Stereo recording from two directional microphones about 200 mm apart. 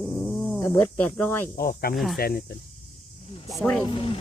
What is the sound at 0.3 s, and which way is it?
Speech, 5° left (ahead or behind).